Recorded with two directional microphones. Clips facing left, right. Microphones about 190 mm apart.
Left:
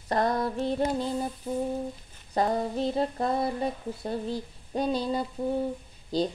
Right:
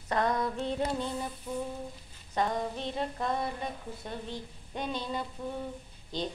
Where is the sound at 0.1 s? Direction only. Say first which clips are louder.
Left 3 dB; 35° left (ahead or behind).